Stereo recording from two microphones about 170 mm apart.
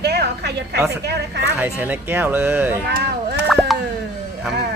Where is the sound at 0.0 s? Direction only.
75° right (ahead or behind).